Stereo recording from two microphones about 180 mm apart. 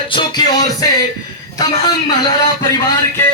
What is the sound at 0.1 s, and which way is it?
Music, 25° left (ahead or behind).